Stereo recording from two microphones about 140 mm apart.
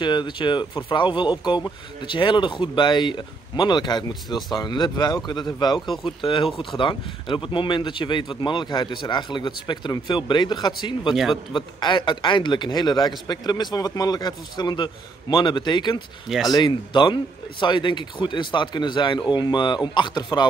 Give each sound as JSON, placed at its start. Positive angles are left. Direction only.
{"t": 0.0, "sound": "speech", "side_deg": 35}